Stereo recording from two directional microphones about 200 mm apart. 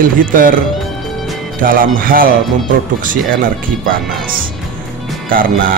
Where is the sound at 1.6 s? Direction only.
45° right (ahead or behind).